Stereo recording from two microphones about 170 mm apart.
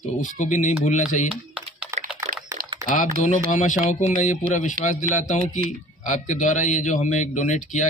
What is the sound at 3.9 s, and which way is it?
Speech, 45° left (ahead or behind).